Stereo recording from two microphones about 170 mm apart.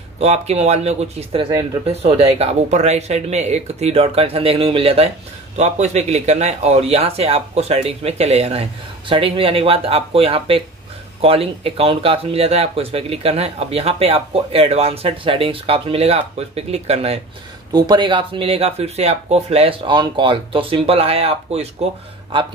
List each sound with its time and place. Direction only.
0.2 s speech: 40° right (ahead or behind)
17.7 s speech: 25° right (ahead or behind)